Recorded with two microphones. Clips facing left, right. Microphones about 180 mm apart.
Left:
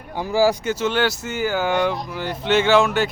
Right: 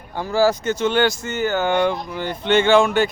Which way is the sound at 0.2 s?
15° left (ahead or behind).